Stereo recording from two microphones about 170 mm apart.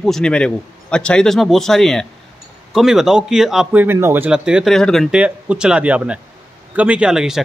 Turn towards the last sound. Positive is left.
turn(degrees=-5)  # may be behind; listen again after turning